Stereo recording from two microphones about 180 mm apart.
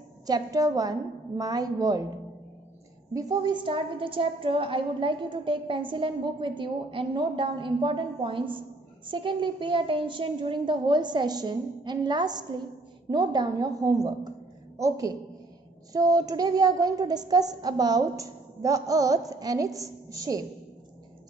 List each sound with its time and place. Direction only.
0.3 s a woman's voice: 20° right (ahead or behind)
3.1 s a woman's voice: 20° right (ahead or behind)